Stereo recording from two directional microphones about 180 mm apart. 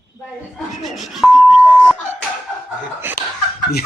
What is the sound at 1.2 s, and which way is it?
Speech, centre (ahead or behind).